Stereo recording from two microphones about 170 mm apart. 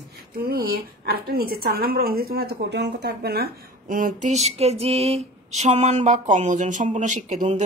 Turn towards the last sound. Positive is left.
turn(degrees=-45)  # may be behind; listen again after turning